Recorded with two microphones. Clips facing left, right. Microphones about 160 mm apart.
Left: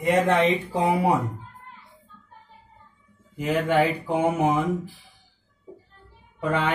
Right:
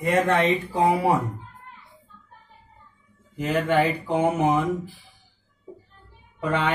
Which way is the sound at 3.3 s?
10° left (ahead or behind).